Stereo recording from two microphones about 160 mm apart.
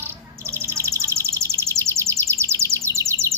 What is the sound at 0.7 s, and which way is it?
Bird, 15° right (ahead or behind).